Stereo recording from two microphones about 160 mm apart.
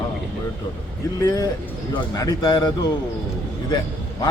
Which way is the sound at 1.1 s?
25° left (ahead or behind).